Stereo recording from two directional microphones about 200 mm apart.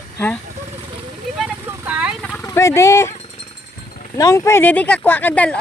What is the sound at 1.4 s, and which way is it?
Vehicle, 10° right (ahead or behind).